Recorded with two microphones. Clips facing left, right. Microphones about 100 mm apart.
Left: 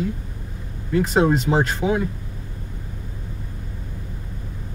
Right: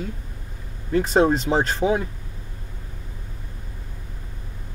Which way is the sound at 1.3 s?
5° left (ahead or behind).